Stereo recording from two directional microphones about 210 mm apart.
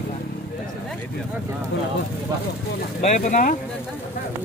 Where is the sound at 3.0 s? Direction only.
35° left (ahead or behind).